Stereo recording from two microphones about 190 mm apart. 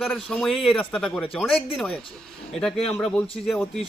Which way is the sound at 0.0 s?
5° left (ahead or behind).